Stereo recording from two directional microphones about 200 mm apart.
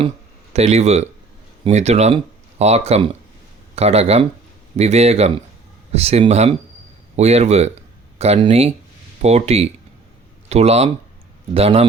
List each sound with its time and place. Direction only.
0.5 s a man's voice: 35° right (ahead or behind)